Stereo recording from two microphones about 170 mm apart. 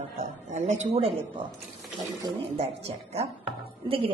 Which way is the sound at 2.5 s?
35° right (ahead or behind).